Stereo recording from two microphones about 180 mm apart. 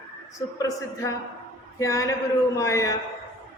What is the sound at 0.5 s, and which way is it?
A man's voice, 20° left (ahead or behind).